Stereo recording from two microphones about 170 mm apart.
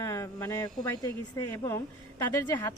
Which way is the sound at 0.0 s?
20° left (ahead or behind).